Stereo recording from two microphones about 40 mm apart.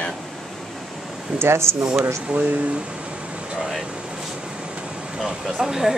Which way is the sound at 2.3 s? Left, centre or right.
Right.